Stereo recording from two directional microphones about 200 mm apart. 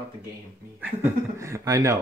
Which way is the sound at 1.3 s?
15° right (ahead or behind).